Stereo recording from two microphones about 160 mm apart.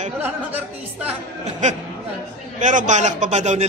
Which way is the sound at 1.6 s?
50° right (ahead or behind).